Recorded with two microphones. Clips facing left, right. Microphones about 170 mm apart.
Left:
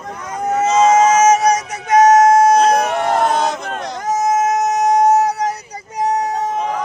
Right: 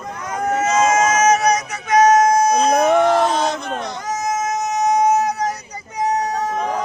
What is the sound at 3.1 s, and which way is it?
Crowd, 55° left (ahead or behind).